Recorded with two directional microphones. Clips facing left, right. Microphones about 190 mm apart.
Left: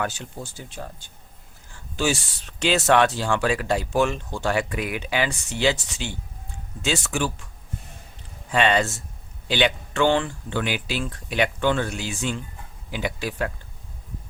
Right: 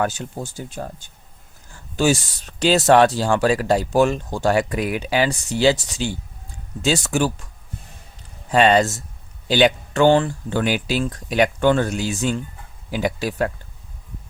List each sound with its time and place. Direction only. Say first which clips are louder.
0.0 s speech: right 6 dB; 45° right (ahead or behind)
8.5 s speech: right 5 dB; 40° right (ahead or behind)